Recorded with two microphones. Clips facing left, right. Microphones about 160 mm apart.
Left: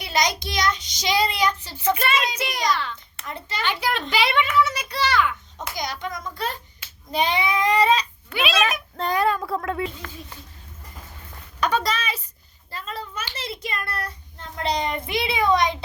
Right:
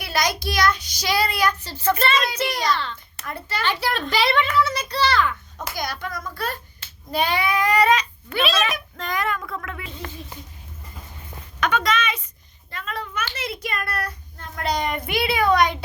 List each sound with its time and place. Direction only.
0.0 s child singing: 20° left (ahead or behind)
3.2 s child singing: 20° left (ahead or behind)
3.8 s a child's voice: 15° left (ahead or behind)
5.7 s child singing: 20° left (ahead or behind)
8.3 s speech: 10° left (ahead or behind)
8.6 s a child's voice: 30° left (ahead or behind)
11.6 s a woman's voice: 35° left (ahead or behind)
12.7 s a sound: 30° left (ahead or behind)
13.3 s a child's voice: 30° left (ahead or behind)